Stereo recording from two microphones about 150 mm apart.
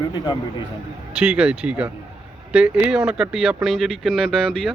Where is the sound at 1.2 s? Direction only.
5° right (ahead or behind).